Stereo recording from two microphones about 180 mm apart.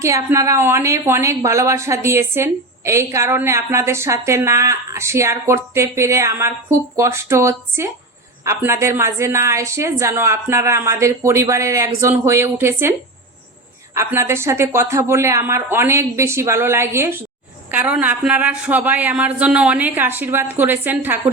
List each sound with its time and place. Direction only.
0.0 s a woman's voice: 15° right (ahead or behind)
13.9 s a woman's voice: 15° right (ahead or behind)